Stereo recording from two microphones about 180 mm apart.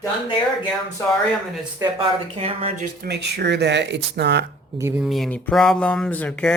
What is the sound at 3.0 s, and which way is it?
Speech, 70° right (ahead or behind).